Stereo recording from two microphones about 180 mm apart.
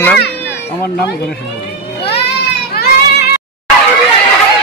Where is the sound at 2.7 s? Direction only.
60° left (ahead or behind).